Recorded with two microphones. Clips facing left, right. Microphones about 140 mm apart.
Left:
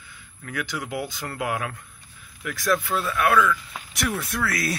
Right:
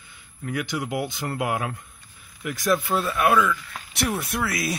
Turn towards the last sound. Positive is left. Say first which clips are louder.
# even
turn(degrees=-20)  # may be behind; listen again after turning